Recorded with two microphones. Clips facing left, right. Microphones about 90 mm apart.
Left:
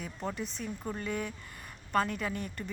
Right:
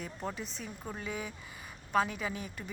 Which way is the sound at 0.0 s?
Centre (ahead or behind).